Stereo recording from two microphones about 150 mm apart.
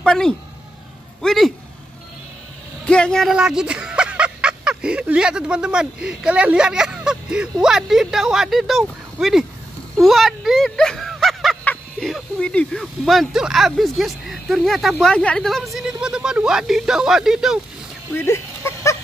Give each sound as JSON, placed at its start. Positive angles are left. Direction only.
{"t": 0.0, "sound": "a woman's voice", "side_deg": 5}
{"t": 2.8, "sound": "speech", "side_deg": 5}
{"t": 9.9, "sound": "a sound", "side_deg": 0}
{"t": 12.1, "sound": "speech", "side_deg": 5}
{"t": 18.1, "sound": "speech", "side_deg": 15}